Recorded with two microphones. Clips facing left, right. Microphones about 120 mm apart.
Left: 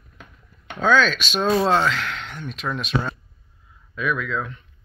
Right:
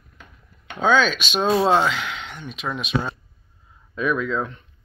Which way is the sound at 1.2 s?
10° right (ahead or behind).